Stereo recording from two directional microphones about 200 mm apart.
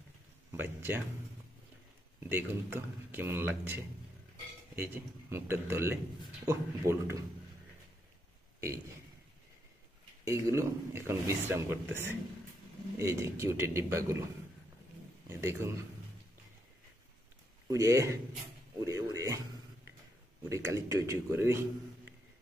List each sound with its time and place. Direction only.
0.5 s speech: 10° right (ahead or behind)
2.1 s speech: 10° right (ahead or behind)
8.5 s a man's voice: 15° right (ahead or behind)
10.2 s speech: 15° right (ahead or behind)
13.0 s speech: 15° right (ahead or behind)
15.2 s speech: 15° right (ahead or behind)
17.6 s speech: 15° right (ahead or behind)
18.9 s a sound: 15° right (ahead or behind)
20.4 s speech: 15° right (ahead or behind)